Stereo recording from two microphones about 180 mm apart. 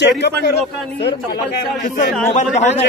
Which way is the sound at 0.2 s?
70° left (ahead or behind).